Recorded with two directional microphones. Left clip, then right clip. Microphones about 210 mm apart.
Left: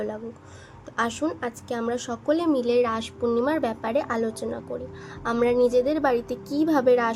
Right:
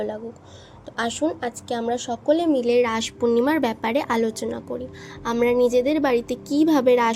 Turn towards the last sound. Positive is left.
turn(degrees=-25)  # may be behind; listen again after turning